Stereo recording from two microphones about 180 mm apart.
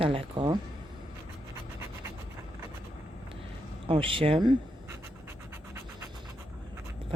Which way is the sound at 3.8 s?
30° right (ahead or behind).